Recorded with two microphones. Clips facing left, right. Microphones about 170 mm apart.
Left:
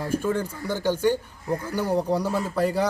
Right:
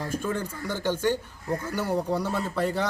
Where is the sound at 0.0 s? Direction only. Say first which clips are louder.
Left 4 dB; 10° left (ahead or behind).